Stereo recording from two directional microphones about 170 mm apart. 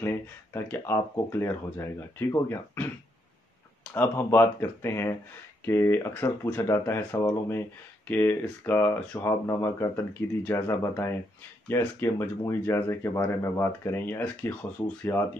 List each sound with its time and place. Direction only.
0.0 s speech: 15° left (ahead or behind)